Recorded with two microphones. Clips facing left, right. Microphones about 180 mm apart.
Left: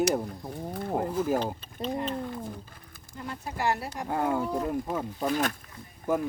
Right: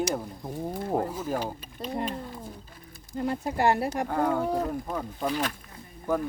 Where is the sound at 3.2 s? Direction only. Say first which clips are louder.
Right 7 dB; 55° right (ahead or behind).